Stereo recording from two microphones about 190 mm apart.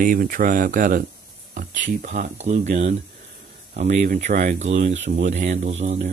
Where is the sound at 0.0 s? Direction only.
45° right (ahead or behind).